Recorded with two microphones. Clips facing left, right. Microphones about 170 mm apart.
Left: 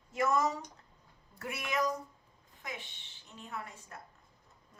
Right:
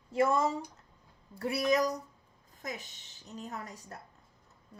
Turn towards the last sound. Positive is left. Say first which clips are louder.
# right 2 dB
turn(degrees=-40)  # may be behind; listen again after turning